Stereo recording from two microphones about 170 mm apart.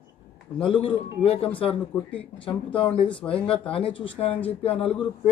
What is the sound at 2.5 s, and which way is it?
Speech, 30° left (ahead or behind).